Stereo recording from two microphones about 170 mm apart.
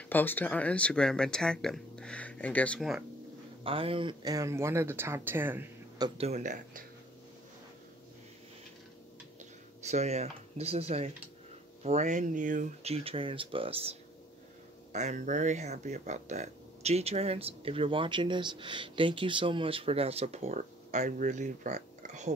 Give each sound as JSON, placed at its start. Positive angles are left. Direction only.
{"t": 0.1, "sound": "speech", "side_deg": 10}
{"t": 3.6, "sound": "speech", "side_deg": -30}
{"t": 5.9, "sound": "speech", "side_deg": -25}
{"t": 6.2, "sound": "speech", "side_deg": -45}
{"t": 9.8, "sound": "speech", "side_deg": -40}